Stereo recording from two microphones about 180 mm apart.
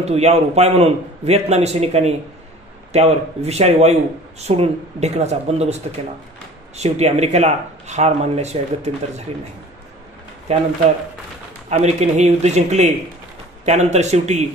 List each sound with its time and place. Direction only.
0.0 s speech: 35° right (ahead or behind)
11.7 s speech: 40° right (ahead or behind)